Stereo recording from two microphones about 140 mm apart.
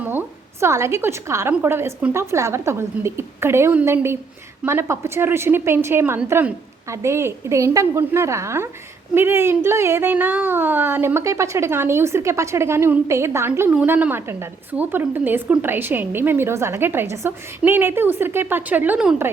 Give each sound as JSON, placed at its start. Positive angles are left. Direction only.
{"t": 0.0, "sound": "a woman's voice", "side_deg": -15}